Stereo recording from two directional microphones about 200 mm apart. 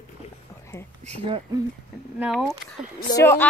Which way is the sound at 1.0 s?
30° right (ahead or behind).